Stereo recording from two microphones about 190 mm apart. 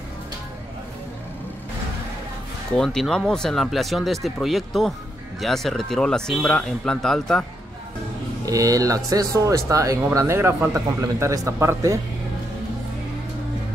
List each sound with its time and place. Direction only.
2.7 s speech: 5° left (ahead or behind)
8.5 s speech: 15° right (ahead or behind)